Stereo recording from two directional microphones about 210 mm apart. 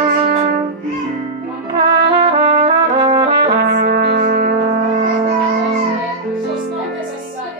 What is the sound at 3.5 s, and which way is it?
Music, 55° right (ahead or behind).